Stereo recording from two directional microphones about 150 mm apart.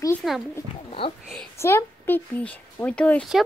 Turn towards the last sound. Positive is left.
turn(degrees=5)  # may be behind; listen again after turning